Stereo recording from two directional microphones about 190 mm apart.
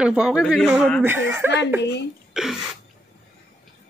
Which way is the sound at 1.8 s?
65° left (ahead or behind).